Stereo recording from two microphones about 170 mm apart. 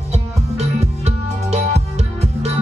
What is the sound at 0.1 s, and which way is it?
Music, 40° right (ahead or behind).